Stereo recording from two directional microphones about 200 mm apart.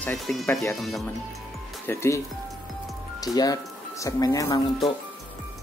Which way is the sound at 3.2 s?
20° left (ahead or behind).